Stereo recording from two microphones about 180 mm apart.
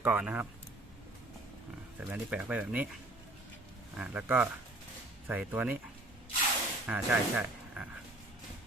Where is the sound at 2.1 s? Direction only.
5° right (ahead or behind).